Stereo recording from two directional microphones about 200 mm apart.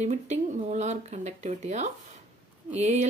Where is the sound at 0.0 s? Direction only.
35° right (ahead or behind).